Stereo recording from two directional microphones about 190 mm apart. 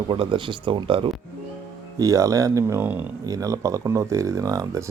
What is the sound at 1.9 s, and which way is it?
Speech, 15° right (ahead or behind).